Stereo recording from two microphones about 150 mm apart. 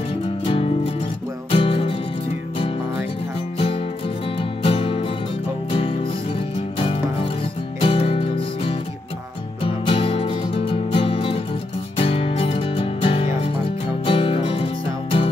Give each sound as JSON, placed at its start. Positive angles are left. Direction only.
{"t": 0.5, "sound": "music", "side_deg": 40}
{"t": 3.5, "sound": "music", "side_deg": 40}
{"t": 7.8, "sound": "music", "side_deg": 40}